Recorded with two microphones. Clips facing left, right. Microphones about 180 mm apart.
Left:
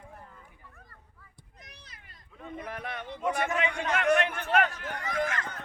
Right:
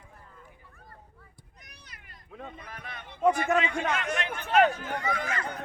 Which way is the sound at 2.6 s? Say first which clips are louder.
Left 7 dB; 65° left (ahead or behind).